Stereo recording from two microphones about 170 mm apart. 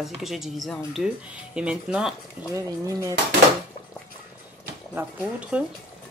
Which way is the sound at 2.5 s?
20° right (ahead or behind).